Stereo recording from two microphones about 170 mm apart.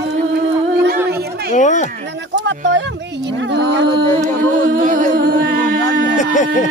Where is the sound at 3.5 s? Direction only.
90° right.